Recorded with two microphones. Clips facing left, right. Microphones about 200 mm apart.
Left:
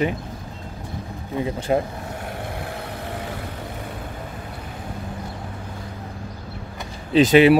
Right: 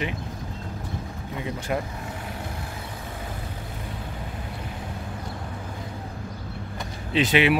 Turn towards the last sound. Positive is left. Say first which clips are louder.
# left 8 dB
turn(degrees=40)  # may be behind; listen again after turning